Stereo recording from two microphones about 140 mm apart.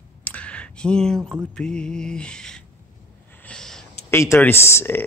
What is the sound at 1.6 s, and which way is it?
Mantra, 5° left (ahead or behind).